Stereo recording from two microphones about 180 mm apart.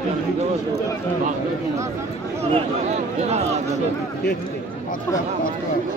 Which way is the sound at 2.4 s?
35° right (ahead or behind).